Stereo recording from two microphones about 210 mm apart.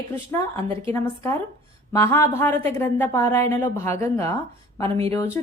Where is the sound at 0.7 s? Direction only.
25° right (ahead or behind).